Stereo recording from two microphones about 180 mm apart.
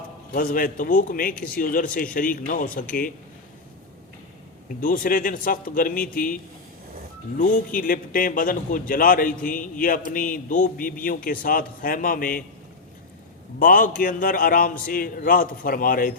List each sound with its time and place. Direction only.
0.3 s a man's voice: 50° left (ahead or behind)
4.8 s a man's voice: 50° left (ahead or behind)
13.6 s a man's voice: 50° left (ahead or behind)